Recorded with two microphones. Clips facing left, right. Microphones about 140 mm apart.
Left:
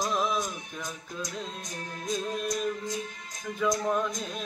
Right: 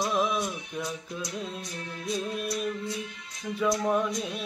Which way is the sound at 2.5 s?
40° left (ahead or behind).